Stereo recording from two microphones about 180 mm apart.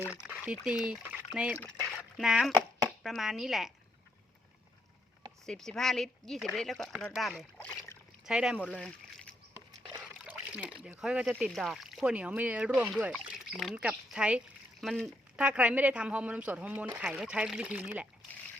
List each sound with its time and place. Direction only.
0.3 s speech: 5° right (ahead or behind)
1.9 s a sound: centre (ahead or behind)
2.5 s chopping: 20° right (ahead or behind)
3.0 s speech: centre (ahead or behind)
5.5 s speech: 5° left (ahead or behind)
8.3 s speech: 5° right (ahead or behind)
10.0 s splash: 5° right (ahead or behind)
11.0 s speech: 5° right (ahead or behind)